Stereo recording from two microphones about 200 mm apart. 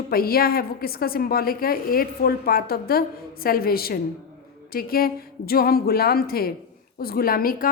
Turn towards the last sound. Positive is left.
turn(degrees=45)  # may be behind; listen again after turning